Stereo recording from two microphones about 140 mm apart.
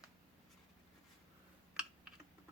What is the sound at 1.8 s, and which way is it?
Typing, 5° right (ahead or behind).